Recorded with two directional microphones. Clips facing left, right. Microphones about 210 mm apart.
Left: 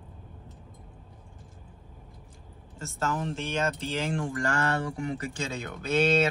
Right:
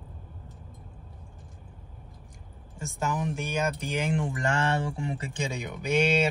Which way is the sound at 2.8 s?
15° right (ahead or behind).